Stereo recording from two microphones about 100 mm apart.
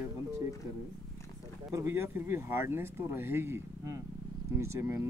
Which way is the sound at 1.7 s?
25° right (ahead or behind).